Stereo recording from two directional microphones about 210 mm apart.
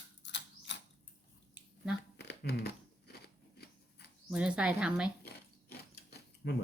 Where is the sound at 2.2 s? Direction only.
50° left (ahead or behind).